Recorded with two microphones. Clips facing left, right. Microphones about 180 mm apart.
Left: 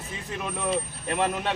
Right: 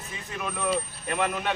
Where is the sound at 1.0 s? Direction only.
30° left (ahead or behind).